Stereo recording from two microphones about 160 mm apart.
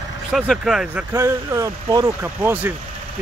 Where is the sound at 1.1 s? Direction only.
20° right (ahead or behind).